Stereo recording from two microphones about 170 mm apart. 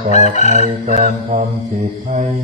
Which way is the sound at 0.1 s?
45° left (ahead or behind).